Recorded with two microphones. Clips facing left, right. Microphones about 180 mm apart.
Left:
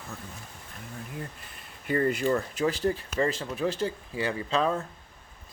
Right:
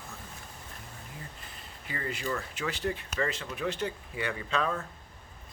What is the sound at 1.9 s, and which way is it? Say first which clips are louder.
Speech: left 10 dB; 45° left (ahead or behind).